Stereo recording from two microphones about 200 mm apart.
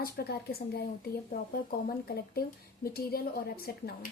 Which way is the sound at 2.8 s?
50° left (ahead or behind).